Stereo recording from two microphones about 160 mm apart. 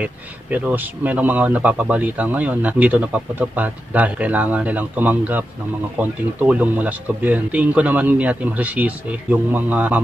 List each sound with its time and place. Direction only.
0.0 s speech: 10° right (ahead or behind)